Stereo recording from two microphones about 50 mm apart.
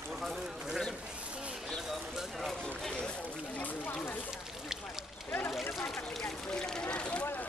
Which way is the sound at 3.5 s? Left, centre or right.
Left.